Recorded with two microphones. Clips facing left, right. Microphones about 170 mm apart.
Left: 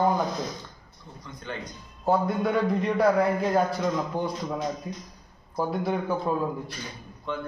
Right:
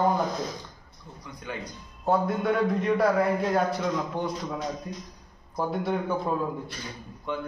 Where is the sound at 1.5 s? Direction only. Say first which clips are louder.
Even; 5° right (ahead or behind).